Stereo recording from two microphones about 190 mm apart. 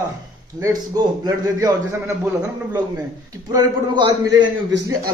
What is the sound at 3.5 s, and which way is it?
Speech, 20° right (ahead or behind).